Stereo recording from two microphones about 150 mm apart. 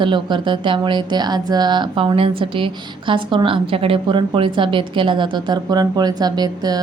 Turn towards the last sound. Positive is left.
turn(degrees=-25)  # may be behind; listen again after turning